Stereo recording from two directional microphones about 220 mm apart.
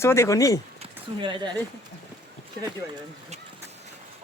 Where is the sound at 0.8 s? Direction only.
20° right (ahead or behind).